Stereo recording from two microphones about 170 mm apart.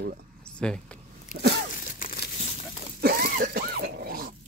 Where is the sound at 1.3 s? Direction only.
70° right (ahead or behind).